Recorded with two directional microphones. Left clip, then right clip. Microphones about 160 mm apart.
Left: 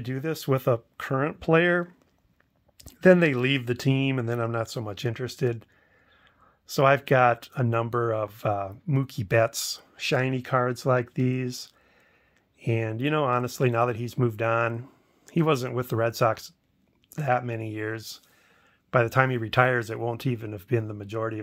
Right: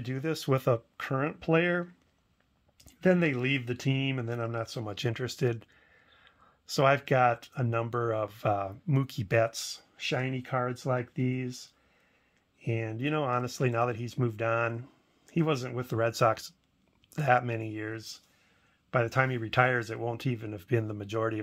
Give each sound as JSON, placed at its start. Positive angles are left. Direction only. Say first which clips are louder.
{"t": 0.0, "sound": "speech", "louder": "left 3 dB", "side_deg": 15}
{"t": 2.8, "sound": "speech", "louder": "left 8 dB", "side_deg": 40}
{"t": 4.8, "sound": "speech", "louder": "left 2 dB", "side_deg": 15}
{"t": 9.5, "sound": "speech", "louder": "left 6 dB", "side_deg": 40}
{"t": 12.5, "sound": "speech", "louder": "left 6 dB", "side_deg": 35}
{"t": 16.0, "sound": "speech", "louder": "left 2 dB", "side_deg": 20}
{"t": 17.6, "sound": "speech", "louder": "left 5 dB", "side_deg": 30}